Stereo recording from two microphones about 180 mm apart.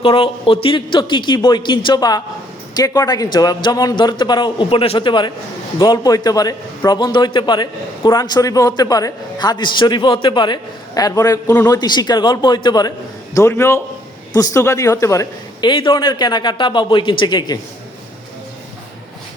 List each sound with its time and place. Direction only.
0.0 s a man's voice: 30° left (ahead or behind)